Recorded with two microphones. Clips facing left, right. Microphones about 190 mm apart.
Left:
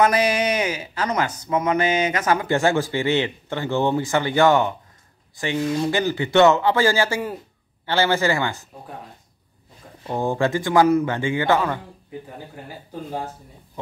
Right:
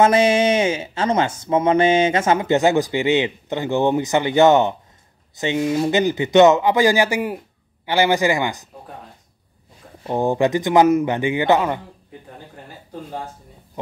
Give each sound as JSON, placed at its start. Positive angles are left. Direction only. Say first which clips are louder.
{"t": 0.0, "sound": "speech", "louder": "right 4 dB", "side_deg": -25}
{"t": 10.0, "sound": "speech", "louder": "right 4 dB", "side_deg": -20}